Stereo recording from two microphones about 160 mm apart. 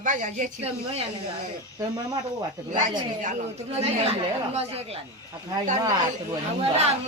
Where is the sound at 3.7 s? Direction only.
40° right (ahead or behind).